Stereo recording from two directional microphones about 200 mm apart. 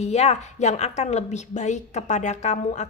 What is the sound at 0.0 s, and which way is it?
A woman's voice, 35° left (ahead or behind).